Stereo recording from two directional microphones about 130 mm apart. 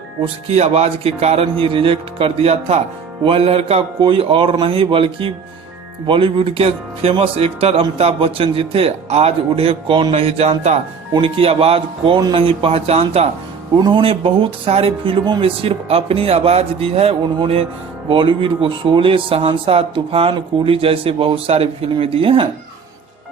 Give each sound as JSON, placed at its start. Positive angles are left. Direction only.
{"t": 0.2, "sound": "speech", "side_deg": -50}
{"t": 13.7, "sound": "speech", "side_deg": -35}